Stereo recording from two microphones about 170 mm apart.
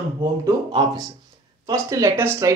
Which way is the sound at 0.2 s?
20° right (ahead or behind).